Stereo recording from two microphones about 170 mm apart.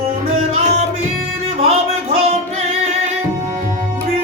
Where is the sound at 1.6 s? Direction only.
35° right (ahead or behind).